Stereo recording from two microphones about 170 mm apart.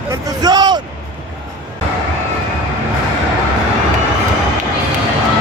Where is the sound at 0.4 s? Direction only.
25° right (ahead or behind).